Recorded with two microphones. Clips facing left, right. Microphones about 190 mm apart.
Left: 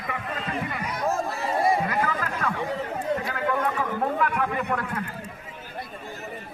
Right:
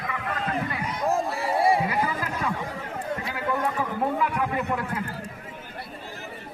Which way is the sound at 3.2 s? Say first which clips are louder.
Left 1 dB; 10° right (ahead or behind).